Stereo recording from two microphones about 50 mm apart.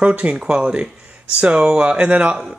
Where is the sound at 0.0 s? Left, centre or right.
Right.